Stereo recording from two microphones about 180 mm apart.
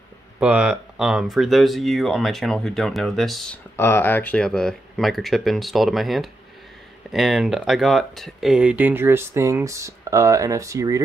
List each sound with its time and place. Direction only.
0.4 s speech: 5° right (ahead or behind)
3.7 s speech: 15° left (ahead or behind); by 11.0 s 15° right (ahead or behind)